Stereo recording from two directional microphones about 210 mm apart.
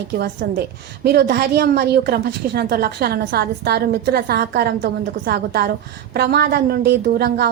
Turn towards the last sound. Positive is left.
turn(degrees=-50)  # may be behind; listen again after turning